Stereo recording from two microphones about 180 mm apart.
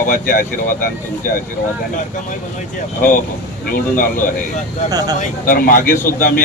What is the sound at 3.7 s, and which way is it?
Speech, 50° left (ahead or behind).